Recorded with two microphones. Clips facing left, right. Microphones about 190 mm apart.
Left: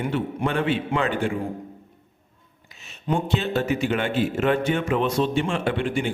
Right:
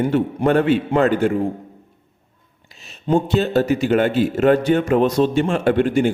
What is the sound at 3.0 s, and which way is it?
A man's voice, 35° right (ahead or behind).